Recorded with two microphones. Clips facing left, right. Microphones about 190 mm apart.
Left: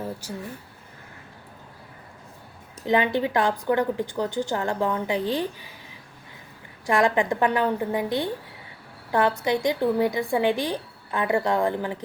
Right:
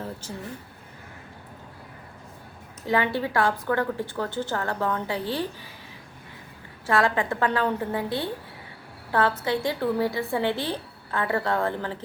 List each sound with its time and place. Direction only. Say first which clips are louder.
0.0 s speech: left 3 dB; 10° left (ahead or behind)
2.8 s a woman's voice: left 3 dB; 20° left (ahead or behind)
6.8 s a woman's voice: left 2 dB; 15° left (ahead or behind)
9.4 s a woman's voice: left 3 dB; 15° left (ahead or behind)